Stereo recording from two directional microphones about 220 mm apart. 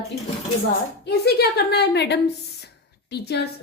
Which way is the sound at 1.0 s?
50° left (ahead or behind).